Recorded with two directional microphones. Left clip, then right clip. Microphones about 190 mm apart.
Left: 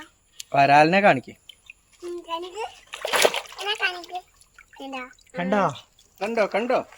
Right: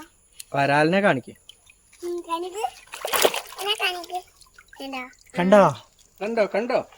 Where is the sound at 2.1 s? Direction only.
15° right (ahead or behind).